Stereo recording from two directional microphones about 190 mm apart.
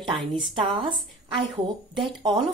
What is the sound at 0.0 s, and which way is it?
A woman's voice, 25° right (ahead or behind).